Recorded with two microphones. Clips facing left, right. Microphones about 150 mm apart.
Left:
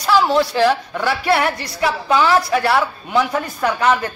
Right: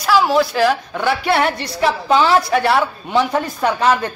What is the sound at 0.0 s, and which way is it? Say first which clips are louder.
A woman's voice: right 1 dB; 10° right (ahead or behind).